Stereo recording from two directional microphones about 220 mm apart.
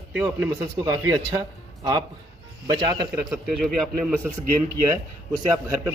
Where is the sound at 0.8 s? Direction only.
15° right (ahead or behind).